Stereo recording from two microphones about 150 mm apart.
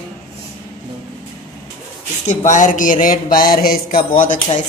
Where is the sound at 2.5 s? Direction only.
60° left (ahead or behind).